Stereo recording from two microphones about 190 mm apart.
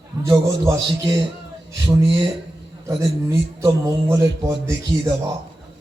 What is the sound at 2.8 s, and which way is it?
A man's voice, 15° right (ahead or behind).